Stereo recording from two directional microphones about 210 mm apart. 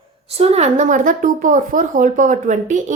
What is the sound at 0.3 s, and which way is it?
Speech, 30° right (ahead or behind).